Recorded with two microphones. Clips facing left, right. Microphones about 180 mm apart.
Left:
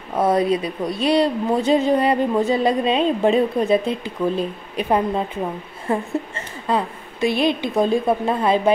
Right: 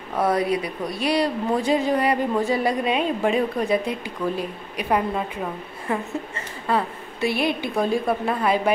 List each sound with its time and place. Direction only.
0.2 s a woman's voice: 25° left (ahead or behind)
6.7 s a woman's voice: 20° left (ahead or behind)